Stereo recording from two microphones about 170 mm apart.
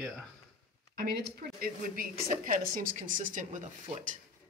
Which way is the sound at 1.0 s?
65° right (ahead or behind).